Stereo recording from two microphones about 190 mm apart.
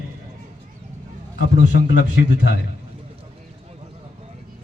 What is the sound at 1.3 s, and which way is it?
A man's voice, 65° left (ahead or behind).